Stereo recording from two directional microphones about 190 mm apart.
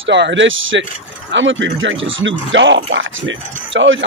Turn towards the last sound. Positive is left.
turn(degrees=-80)